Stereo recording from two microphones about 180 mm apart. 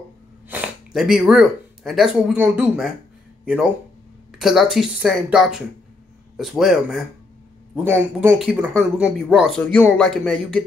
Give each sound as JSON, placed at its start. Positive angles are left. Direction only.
{"t": 0.5, "sound": "speech", "side_deg": -5}
{"t": 4.3, "sound": "speech", "side_deg": 0}